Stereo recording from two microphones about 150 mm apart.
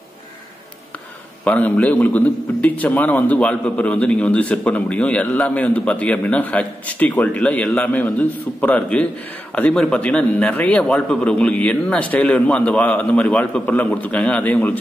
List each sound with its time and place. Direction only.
1.4 s a man's voice: 10° left (ahead or behind)